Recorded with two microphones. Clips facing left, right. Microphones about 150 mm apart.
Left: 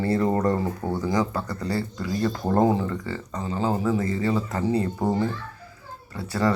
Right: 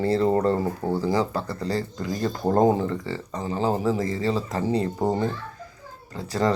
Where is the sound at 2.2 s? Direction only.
20° right (ahead or behind).